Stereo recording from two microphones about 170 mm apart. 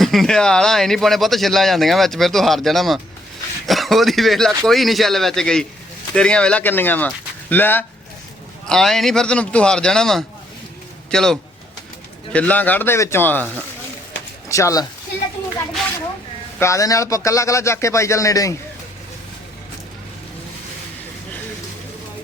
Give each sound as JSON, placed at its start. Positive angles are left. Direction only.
{"t": 0.0, "sound": "speech", "side_deg": 0}
{"t": 14.5, "sound": "speech", "side_deg": 20}
{"t": 16.6, "sound": "speech", "side_deg": 15}